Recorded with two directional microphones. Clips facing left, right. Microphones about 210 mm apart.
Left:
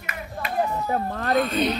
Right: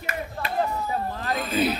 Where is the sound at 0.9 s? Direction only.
60° left (ahead or behind).